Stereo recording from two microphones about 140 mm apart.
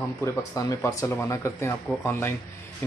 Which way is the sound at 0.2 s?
25° left (ahead or behind).